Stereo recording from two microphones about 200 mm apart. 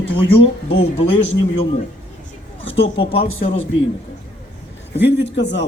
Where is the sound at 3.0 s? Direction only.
30° left (ahead or behind).